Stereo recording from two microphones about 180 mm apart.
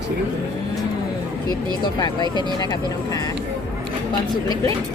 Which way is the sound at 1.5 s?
25° left (ahead or behind).